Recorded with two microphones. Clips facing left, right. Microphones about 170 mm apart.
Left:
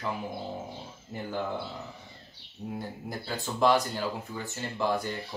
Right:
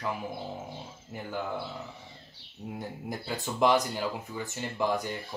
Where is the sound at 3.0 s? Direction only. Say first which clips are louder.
Right 2 dB; 15° right (ahead or behind).